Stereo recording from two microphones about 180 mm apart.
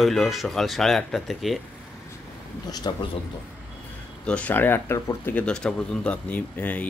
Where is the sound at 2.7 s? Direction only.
20° left (ahead or behind).